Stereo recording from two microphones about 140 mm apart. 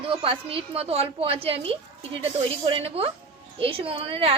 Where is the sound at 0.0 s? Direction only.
40° right (ahead or behind).